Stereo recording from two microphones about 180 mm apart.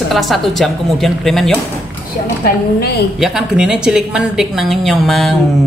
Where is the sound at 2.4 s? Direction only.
65° left (ahead or behind).